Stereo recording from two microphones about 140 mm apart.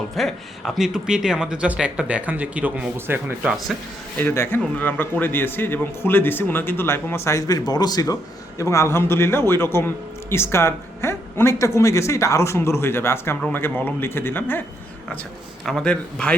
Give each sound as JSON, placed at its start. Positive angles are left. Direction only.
{"t": 0.2, "sound": "speech", "side_deg": 0}
{"t": 4.2, "sound": "a man's voice", "side_deg": 15}
{"t": 15.6, "sound": "a man's voice", "side_deg": 5}